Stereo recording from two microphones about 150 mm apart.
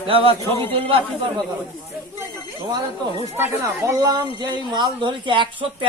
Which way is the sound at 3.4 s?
15° right (ahead or behind).